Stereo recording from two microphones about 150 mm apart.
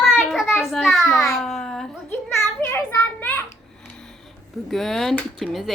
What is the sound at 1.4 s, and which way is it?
Babbling, centre (ahead or behind).